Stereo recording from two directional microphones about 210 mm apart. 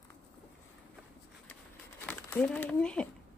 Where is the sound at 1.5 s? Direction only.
10° left (ahead or behind).